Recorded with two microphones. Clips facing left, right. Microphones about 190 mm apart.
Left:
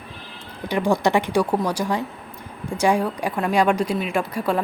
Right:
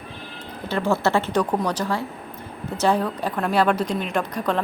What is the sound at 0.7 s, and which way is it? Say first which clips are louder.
A woman's voice: left 2 dB; 15° left (ahead or behind).